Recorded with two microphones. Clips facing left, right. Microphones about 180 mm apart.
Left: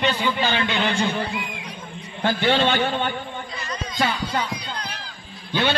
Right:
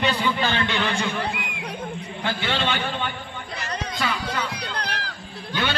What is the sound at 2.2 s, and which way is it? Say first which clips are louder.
Speech: left 6 dB; 40° left (ahead or behind).